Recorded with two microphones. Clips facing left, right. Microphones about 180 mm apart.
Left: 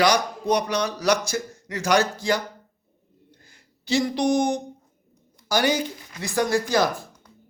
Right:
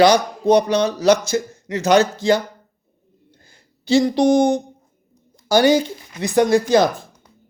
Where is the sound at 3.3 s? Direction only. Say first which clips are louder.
Right 2 dB; 30° right (ahead or behind).